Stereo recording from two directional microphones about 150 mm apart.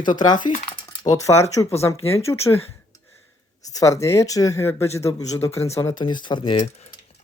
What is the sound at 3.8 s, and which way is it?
Speech, 20° left (ahead or behind).